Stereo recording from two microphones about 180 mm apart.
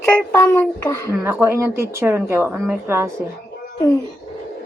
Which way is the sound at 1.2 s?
15° right (ahead or behind).